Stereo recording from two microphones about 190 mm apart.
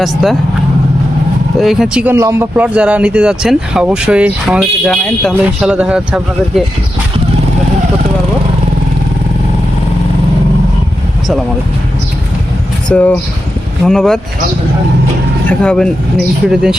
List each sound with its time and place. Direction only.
0.0 s speech: centre (ahead or behind)
1.5 s speech: centre (ahead or behind)
12.9 s speech: 10° left (ahead or behind)
15.4 s speech: 5° left (ahead or behind)